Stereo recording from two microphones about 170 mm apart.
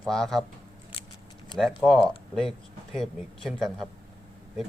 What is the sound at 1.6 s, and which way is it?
Speech, centre (ahead or behind).